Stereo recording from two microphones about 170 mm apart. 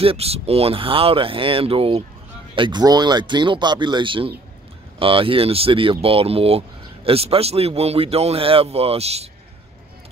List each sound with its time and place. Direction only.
0.0 s speech: 35° right (ahead or behind)